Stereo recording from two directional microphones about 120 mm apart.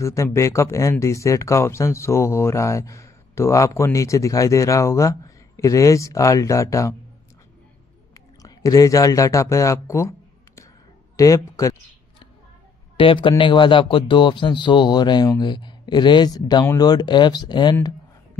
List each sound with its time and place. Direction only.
0.0 s speech: 25° left (ahead or behind)
8.4 s speech: 30° left (ahead or behind)
12.9 s a man's voice: 45° left (ahead or behind)